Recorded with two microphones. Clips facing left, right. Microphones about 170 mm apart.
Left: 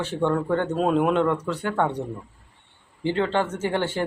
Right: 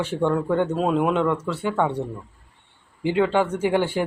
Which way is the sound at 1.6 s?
10° right (ahead or behind).